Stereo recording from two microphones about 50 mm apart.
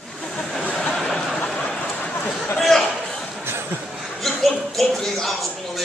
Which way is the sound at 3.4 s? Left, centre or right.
Right.